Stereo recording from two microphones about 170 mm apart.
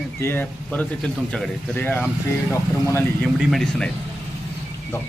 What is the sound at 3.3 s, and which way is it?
Speech, centre (ahead or behind).